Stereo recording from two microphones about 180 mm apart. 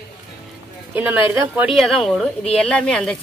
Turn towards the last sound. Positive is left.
turn(degrees=5)  # may be behind; listen again after turning